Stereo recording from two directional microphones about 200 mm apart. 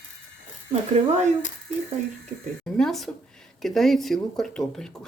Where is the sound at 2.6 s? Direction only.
5° left (ahead or behind).